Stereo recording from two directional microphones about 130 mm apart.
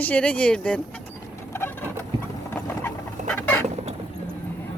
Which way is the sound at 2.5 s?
15° left (ahead or behind).